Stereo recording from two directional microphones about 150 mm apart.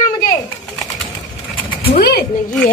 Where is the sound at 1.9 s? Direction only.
90° left.